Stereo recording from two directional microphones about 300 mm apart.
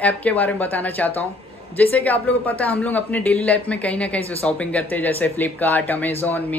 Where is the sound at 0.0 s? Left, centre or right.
Centre.